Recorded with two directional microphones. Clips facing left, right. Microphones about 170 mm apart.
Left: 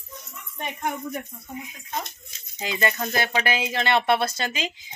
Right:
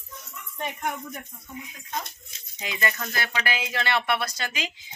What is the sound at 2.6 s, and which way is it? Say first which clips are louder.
A woman's voice: left 4 dB; 30° left (ahead or behind).